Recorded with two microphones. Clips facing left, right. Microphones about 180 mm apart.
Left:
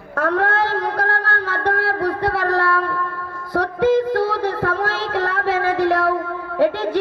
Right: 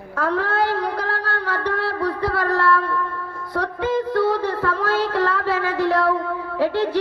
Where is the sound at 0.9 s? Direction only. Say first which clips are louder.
Left 3 dB; 60° left (ahead or behind).